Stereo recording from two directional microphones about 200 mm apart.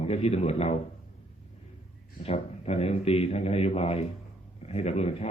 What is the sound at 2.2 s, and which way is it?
A man's voice, 30° left (ahead or behind).